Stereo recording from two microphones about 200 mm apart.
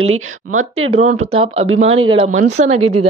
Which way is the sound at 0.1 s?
90° right.